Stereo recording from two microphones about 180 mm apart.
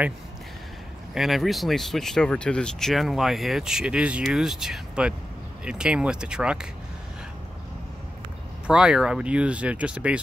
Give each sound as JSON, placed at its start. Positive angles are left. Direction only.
{"t": 1.1, "sound": "speech", "side_deg": 0}
{"t": 8.6, "sound": "speech", "side_deg": -5}